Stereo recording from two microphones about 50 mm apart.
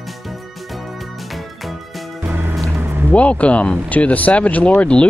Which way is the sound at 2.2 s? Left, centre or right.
Right.